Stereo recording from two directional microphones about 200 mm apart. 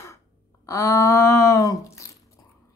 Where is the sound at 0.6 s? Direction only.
15° left (ahead or behind).